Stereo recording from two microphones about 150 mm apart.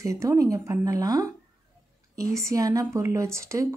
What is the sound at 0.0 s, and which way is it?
Speech, 20° right (ahead or behind).